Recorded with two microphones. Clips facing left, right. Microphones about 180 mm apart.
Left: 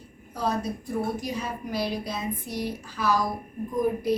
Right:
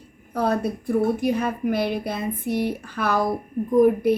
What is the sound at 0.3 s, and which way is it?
A woman's voice, 60° right (ahead or behind).